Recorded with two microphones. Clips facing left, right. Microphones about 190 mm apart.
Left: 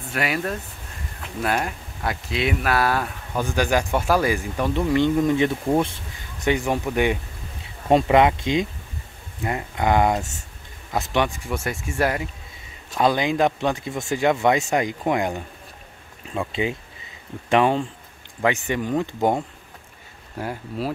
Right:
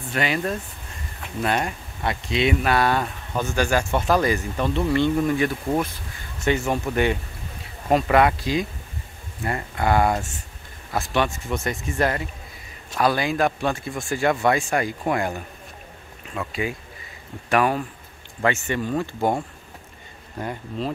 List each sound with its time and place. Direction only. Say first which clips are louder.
0.1 s speech: right 1 dB; 5° left (ahead or behind)
3.4 s speech: left 1 dB; 15° left (ahead or behind)
6.4 s speech: even; 15° left (ahead or behind)
20.3 s speech: left 1 dB; 5° left (ahead or behind)